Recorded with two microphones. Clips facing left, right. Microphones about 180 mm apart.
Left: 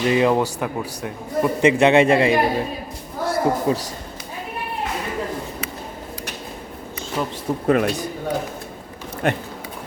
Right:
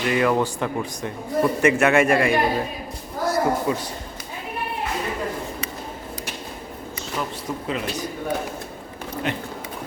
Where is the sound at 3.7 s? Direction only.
30° left (ahead or behind).